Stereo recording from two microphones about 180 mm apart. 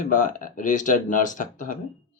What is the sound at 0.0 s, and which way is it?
Speech, 45° left (ahead or behind).